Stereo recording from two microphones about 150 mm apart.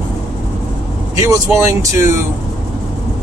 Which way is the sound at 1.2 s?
20° right (ahead or behind).